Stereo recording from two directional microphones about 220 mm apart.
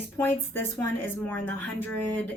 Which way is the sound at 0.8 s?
10° left (ahead or behind).